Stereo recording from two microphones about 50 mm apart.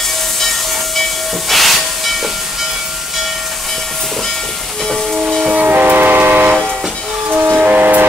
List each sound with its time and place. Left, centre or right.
1.5 s hiss: centre
5.5 s train: right
7.5 s vehicle: right